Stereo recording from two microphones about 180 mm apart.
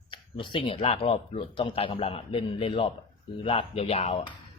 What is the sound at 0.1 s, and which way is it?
Speech, 30° left (ahead or behind).